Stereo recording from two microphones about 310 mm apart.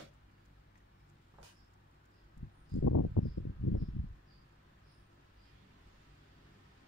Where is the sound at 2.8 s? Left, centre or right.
Left.